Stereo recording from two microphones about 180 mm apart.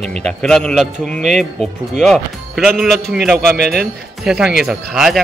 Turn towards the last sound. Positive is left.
turn(degrees=0)  # may be behind; listen again after turning